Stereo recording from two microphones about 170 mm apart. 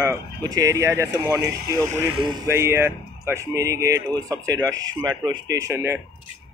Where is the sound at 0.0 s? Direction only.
20° right (ahead or behind).